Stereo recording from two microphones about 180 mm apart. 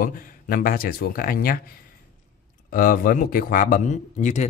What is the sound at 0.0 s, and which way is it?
Speech, 50° left (ahead or behind).